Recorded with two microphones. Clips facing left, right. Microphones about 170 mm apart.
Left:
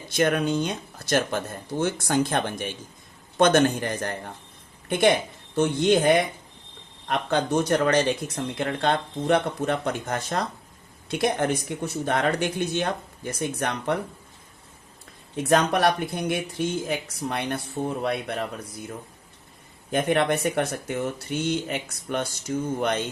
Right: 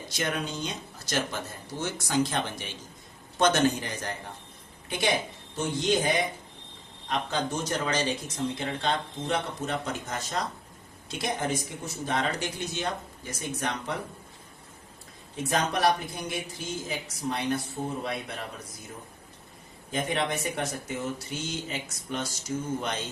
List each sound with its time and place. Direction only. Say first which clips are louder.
0.1 s speech: left 10 dB; 55° left (ahead or behind)
15.4 s speech: left 5 dB; 60° left (ahead or behind)
19.9 s speech: left 7 dB; 60° left (ahead or behind)